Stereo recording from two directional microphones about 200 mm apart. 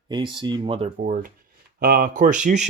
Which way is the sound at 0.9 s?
40° right (ahead or behind).